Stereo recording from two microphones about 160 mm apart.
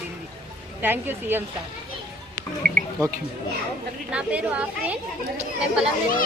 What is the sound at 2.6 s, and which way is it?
Speech, 80° right.